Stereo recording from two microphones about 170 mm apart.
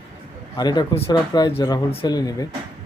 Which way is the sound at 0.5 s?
25° left (ahead or behind).